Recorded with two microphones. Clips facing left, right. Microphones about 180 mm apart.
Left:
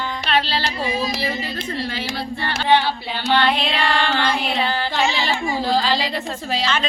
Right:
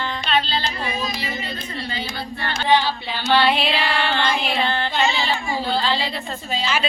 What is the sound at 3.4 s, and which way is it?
Music, 5° right (ahead or behind).